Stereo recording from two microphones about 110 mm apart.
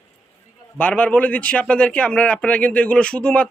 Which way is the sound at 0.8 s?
15° left (ahead or behind).